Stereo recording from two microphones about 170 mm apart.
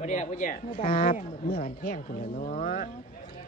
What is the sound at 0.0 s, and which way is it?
Speech, 45° left (ahead or behind).